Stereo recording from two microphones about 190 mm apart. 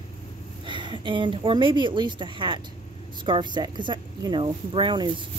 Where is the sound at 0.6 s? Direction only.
25° right (ahead or behind).